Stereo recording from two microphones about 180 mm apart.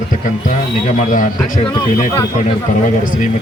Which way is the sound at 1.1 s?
45° left (ahead or behind).